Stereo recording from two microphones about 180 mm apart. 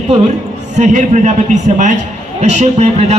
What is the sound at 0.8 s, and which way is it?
A man's voice, 45° right (ahead or behind).